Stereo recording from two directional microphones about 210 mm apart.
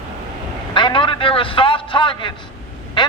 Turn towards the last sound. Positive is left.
turn(degrees=20)  # may be behind; listen again after turning